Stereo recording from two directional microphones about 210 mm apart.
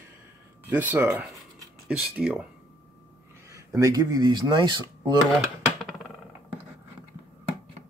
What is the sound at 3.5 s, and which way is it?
Speech, 15° right (ahead or behind).